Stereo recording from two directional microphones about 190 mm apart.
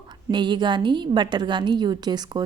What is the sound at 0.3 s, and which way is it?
Speech, 25° right (ahead or behind).